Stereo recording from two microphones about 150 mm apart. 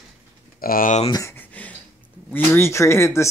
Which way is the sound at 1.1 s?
20° left (ahead or behind).